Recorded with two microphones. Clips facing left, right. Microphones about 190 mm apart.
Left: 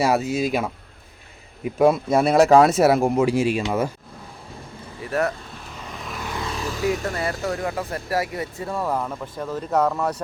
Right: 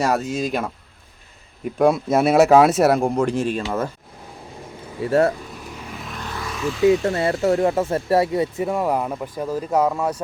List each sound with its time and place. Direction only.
0.0 s speech: 5° left (ahead or behind)
5.8 s vehicle: 5° right (ahead or behind)
6.2 s vehicle: 20° left (ahead or behind)
6.5 s vehicle: 35° left (ahead or behind)
6.8 s speech: 25° right (ahead or behind); by 10.2 s 10° right (ahead or behind)